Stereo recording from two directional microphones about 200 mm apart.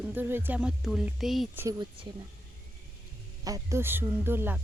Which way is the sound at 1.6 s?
20° right (ahead or behind).